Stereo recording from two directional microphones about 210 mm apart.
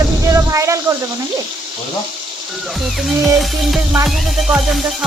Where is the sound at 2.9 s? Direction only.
Centre (ahead or behind).